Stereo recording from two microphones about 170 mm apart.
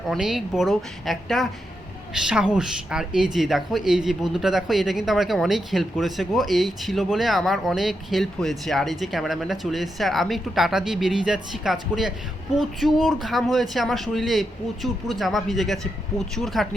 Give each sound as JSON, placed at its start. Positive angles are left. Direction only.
{"t": 0.1, "sound": "speech", "side_deg": 0}